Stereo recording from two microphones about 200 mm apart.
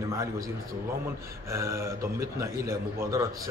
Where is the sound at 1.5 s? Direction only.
15° right (ahead or behind).